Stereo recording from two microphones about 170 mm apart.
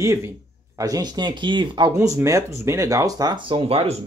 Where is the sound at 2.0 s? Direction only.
15° right (ahead or behind); by 3.9 s 35° right (ahead or behind).